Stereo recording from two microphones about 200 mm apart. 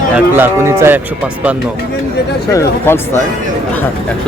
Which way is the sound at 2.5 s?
15° left (ahead or behind).